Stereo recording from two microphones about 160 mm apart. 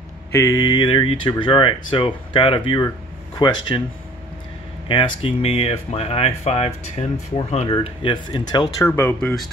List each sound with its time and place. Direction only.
0.3 s speech: 20° left (ahead or behind)
4.8 s speech: 30° left (ahead or behind)
8.7 s speech: 15° left (ahead or behind)